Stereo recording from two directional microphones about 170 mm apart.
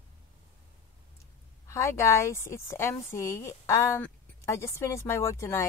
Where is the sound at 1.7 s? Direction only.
15° left (ahead or behind).